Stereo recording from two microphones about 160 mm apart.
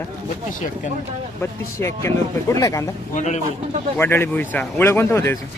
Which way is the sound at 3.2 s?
45° left (ahead or behind).